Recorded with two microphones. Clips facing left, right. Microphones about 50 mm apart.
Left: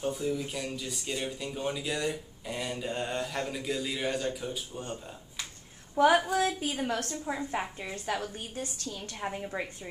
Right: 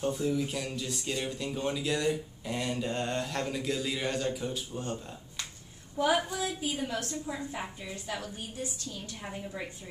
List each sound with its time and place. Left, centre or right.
0.0 s speech: centre
5.9 s female singing: left
6.3 s a woman's voice: left